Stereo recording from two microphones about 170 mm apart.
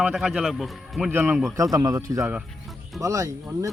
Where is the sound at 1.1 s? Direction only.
10° right (ahead or behind).